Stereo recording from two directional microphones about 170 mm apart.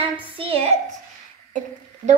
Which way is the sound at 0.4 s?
35° right (ahead or behind).